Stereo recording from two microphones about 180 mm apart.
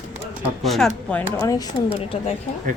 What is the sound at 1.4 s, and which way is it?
Speech, 20° left (ahead or behind).